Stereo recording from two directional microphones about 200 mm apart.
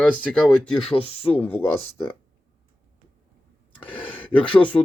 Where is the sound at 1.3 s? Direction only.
5° left (ahead or behind).